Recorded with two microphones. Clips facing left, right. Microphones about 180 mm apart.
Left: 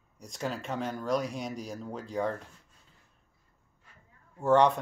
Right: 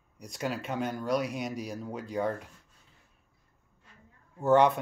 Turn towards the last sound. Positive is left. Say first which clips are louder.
# right 1 dB
turn(degrees=-5)  # may be behind; listen again after turning